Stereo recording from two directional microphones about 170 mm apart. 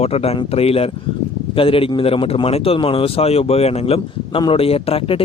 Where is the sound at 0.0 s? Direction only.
35° left (ahead or behind).